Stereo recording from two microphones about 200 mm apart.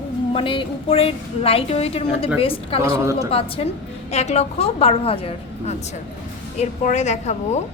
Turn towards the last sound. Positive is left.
turn(degrees=35)  # may be behind; listen again after turning